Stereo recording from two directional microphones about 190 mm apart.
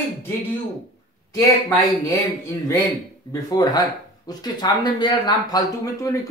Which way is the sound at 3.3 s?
20° left (ahead or behind).